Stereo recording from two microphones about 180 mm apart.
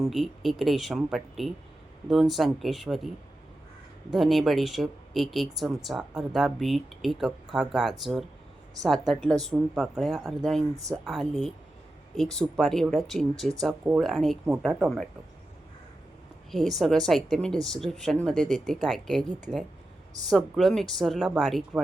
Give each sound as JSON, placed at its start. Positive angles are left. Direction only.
{"t": 0.0, "sound": "speech", "side_deg": 0}
{"t": 4.1, "sound": "speech", "side_deg": 0}
{"t": 10.8, "sound": "speech", "side_deg": -20}
{"t": 11.0, "sound": "speech", "side_deg": 0}
{"t": 16.5, "sound": "speech", "side_deg": 0}
{"t": 20.3, "sound": "speech", "side_deg": 0}